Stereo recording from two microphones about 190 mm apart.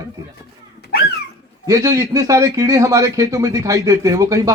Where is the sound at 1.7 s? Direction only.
15° right (ahead or behind).